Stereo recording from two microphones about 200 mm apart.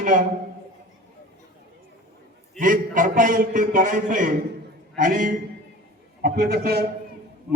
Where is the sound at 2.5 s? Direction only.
45° right (ahead or behind).